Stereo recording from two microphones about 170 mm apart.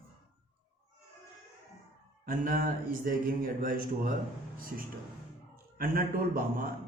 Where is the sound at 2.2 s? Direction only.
55° right (ahead or behind).